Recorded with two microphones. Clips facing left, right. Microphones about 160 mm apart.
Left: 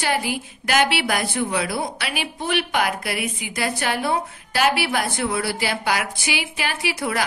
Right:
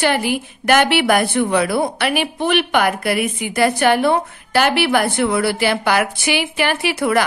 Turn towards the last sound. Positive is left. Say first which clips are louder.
# right 8 dB
turn(degrees=-65)  # may be behind; listen again after turning